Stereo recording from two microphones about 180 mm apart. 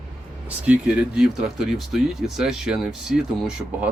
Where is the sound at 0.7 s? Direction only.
5° right (ahead or behind).